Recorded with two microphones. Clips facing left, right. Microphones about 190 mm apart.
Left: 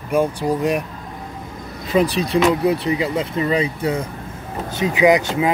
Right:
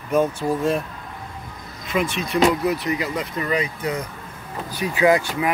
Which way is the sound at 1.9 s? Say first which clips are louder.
Left 6 dB; 35° left (ahead or behind).